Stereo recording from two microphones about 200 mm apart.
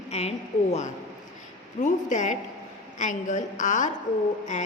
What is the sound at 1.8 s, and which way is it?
A woman's voice, 40° left (ahead or behind).